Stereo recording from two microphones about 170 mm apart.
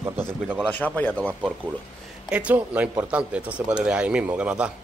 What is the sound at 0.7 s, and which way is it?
Speech, 10° left (ahead or behind).